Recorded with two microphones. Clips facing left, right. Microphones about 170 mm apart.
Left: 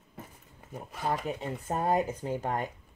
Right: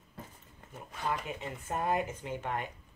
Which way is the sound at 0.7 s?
40° left (ahead or behind).